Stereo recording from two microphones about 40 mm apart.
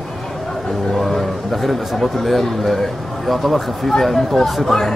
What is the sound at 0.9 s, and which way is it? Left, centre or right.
Speech, centre.